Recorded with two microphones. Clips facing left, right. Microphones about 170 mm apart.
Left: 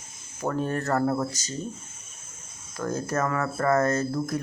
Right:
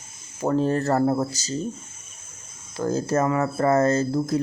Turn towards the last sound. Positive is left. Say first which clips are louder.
# right 4 dB
turn(degrees=-25)  # may be behind; listen again after turning